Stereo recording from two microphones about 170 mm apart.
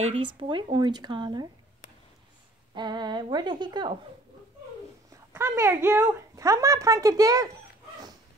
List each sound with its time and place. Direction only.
0.0 s speech: 30° right (ahead or behind)
2.7 s speech: 25° right (ahead or behind)
5.1 s speech: 15° right (ahead or behind)